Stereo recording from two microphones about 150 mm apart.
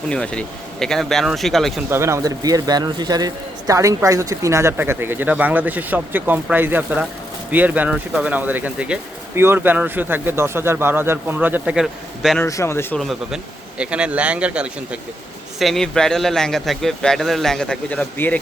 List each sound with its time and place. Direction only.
0.1 s a man's voice: 5° left (ahead or behind)
1.9 s a man's voice: 20° right (ahead or behind); by 12.4 s centre (ahead or behind)
12.4 s speech: 20° left (ahead or behind)
13.0 s a man's voice: centre (ahead or behind)